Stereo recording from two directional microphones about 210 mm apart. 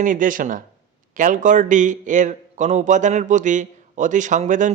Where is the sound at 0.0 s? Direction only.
40° right (ahead or behind).